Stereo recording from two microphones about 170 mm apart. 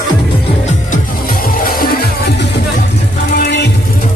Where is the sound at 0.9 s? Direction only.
60° left (ahead or behind); by 4.0 s 80° left.